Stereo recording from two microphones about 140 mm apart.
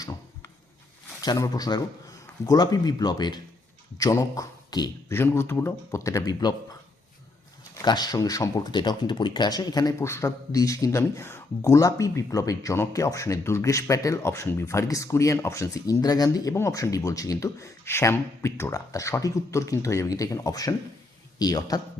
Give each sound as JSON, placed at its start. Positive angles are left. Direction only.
{"t": 1.2, "sound": "a man's voice", "side_deg": 30}
{"t": 7.8, "sound": "a man's voice", "side_deg": 30}